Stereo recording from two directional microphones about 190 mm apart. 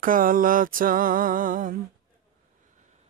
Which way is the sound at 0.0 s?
45° right (ahead or behind).